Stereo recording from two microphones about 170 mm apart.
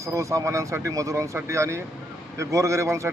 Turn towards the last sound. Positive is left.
turn(degrees=-15)  # may be behind; listen again after turning